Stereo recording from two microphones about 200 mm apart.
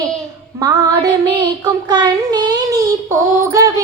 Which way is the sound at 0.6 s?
20° right (ahead or behind).